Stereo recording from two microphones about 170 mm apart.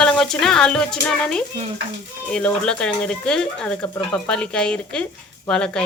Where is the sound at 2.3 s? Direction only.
5° left (ahead or behind).